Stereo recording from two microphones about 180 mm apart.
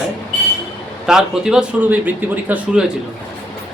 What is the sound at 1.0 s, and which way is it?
A man's voice, 5° right (ahead or behind).